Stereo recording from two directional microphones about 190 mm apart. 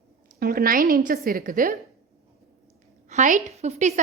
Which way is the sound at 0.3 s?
50° right (ahead or behind).